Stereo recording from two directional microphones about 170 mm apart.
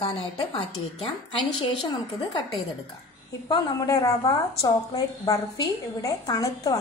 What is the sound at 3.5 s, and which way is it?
A woman's voice, 25° left (ahead or behind).